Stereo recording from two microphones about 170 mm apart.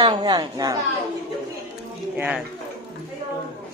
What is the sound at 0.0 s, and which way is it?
Speech, 25° right (ahead or behind).